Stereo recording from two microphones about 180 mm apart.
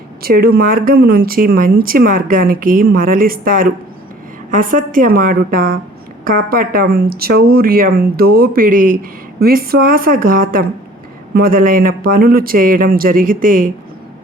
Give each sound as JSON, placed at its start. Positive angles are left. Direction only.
{"t": 0.2, "sound": "speech", "side_deg": -60}